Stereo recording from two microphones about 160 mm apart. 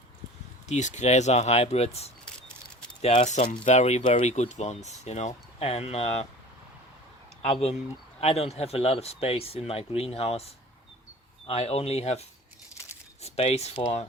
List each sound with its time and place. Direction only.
0.7 s speech: 50° left (ahead or behind)
7.4 s speech: 40° left (ahead or behind)
13.2 s speech: 40° left (ahead or behind)